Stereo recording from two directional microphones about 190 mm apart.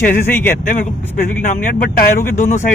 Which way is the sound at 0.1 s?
10° left (ahead or behind).